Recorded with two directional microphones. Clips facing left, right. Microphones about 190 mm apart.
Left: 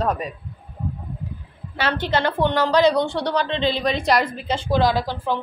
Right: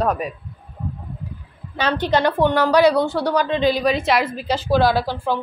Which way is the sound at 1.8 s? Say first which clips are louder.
Right 3 dB; 20° right (ahead or behind).